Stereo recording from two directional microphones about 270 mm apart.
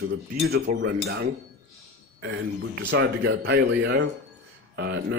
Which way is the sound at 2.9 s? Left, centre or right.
Right.